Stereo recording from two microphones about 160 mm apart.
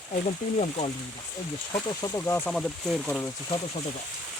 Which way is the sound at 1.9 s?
25° left (ahead or behind).